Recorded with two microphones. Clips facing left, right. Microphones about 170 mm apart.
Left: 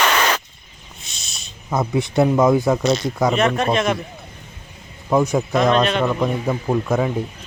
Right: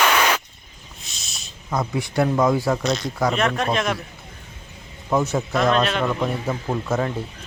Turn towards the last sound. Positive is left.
turn(degrees=15)  # may be behind; listen again after turning